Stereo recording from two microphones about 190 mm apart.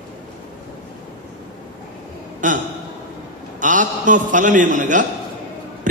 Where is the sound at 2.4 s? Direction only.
45° right (ahead or behind).